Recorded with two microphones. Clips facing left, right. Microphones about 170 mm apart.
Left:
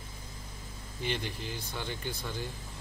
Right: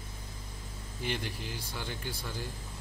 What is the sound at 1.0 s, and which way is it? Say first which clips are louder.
A man's voice: left 1 dB; 10° right (ahead or behind).